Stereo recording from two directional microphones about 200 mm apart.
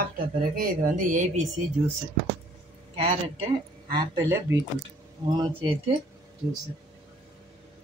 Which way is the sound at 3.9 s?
20° right (ahead or behind).